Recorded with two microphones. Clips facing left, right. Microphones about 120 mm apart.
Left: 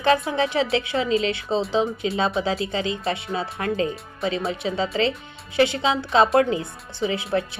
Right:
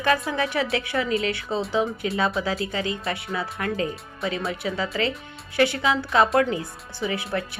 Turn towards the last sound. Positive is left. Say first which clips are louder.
# left 3 dB
turn(degrees=25)  # may be behind; listen again after turning